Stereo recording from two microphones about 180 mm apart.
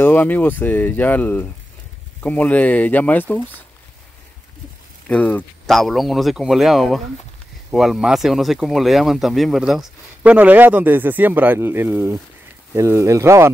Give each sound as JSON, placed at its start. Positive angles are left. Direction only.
{"t": 0.0, "sound": "speech", "side_deg": 10}
{"t": 5.0, "sound": "speech", "side_deg": 10}